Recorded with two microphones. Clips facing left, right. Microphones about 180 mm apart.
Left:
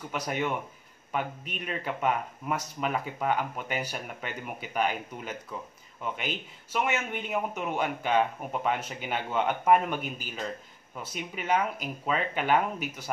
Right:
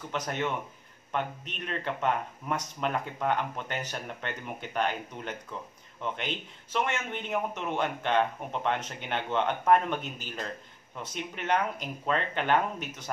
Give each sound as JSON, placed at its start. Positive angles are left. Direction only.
{"t": 0.1, "sound": "a man's voice", "side_deg": 10}